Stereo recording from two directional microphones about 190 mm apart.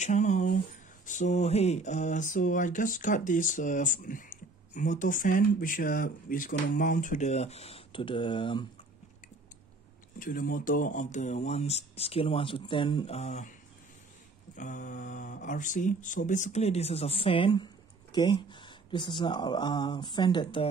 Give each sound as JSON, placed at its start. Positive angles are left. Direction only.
{"t": 0.0, "sound": "speech", "side_deg": 40}
{"t": 10.1, "sound": "speech", "side_deg": 45}
{"t": 14.6, "sound": "speech", "side_deg": 40}